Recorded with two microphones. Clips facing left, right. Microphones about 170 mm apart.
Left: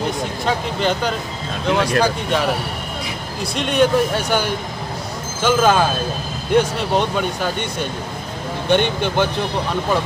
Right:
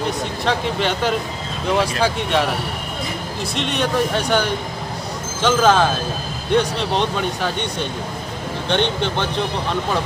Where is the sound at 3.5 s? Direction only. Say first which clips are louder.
Left 5 dB; centre (ahead or behind).